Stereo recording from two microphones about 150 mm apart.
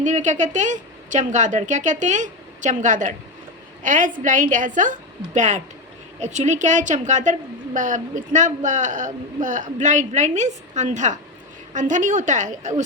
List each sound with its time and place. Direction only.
0.0 s a woman's voice: 55° right (ahead or behind)